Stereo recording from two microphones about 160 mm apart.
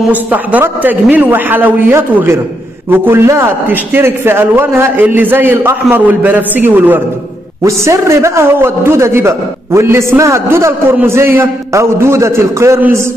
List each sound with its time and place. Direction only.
0.1 s a man's voice: 10° right (ahead or behind)